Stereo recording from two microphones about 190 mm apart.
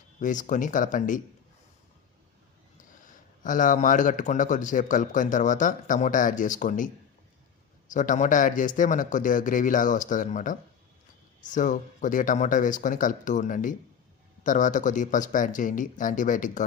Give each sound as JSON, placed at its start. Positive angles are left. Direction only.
{"t": 0.2, "sound": "a man's voice", "side_deg": 40}
{"t": 3.1, "sound": "a man's voice", "side_deg": 45}